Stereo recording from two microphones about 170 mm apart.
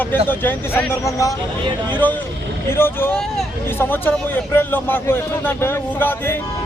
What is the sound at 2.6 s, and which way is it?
A man's voice, 15° left (ahead or behind).